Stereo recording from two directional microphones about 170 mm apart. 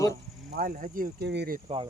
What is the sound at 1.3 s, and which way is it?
Speech, 80° right.